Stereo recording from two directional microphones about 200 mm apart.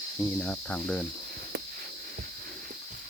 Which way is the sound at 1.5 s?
50° right (ahead or behind).